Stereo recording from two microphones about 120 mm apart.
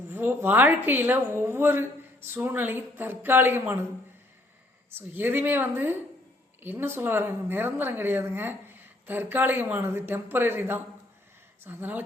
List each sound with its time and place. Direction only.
0.1 s a woman's voice: 15° right (ahead or behind)
4.9 s a woman's voice: 15° right (ahead or behind)